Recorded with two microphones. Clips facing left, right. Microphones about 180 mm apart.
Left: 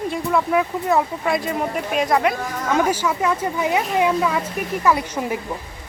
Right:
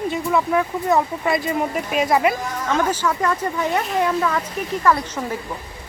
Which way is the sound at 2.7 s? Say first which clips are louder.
Left 1 dB; 10° left (ahead or behind).